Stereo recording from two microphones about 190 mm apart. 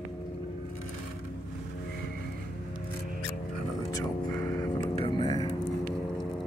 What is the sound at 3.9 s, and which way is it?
Vehicle, 20° left (ahead or behind).